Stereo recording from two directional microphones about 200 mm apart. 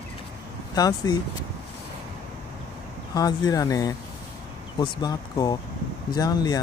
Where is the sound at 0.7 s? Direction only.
20° left (ahead or behind).